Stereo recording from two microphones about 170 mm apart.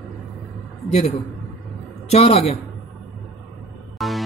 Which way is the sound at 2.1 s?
35° left (ahead or behind).